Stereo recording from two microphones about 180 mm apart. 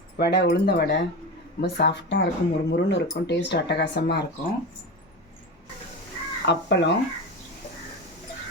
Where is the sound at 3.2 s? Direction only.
70° left (ahead or behind).